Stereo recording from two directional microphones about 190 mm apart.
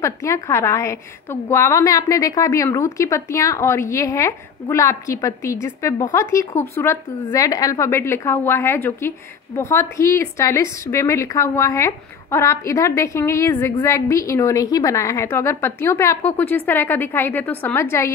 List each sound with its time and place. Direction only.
0.0 s a woman's voice: 15° left (ahead or behind)